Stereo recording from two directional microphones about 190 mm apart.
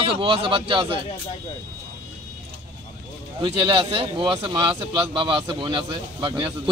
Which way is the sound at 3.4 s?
25° right (ahead or behind).